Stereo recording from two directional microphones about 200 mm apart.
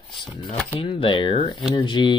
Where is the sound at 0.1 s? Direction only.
Centre (ahead or behind).